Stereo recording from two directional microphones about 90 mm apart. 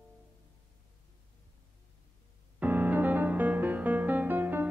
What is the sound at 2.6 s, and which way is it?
Music, 20° right (ahead or behind).